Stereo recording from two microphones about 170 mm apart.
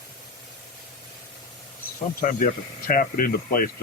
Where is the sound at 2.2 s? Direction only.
55° left (ahead or behind).